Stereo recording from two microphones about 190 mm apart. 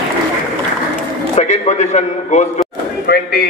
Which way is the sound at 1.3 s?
35° left (ahead or behind).